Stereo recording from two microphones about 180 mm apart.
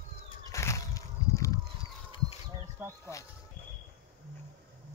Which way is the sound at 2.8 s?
10° right (ahead or behind).